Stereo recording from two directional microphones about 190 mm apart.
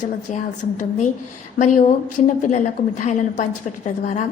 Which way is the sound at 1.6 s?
40° left (ahead or behind).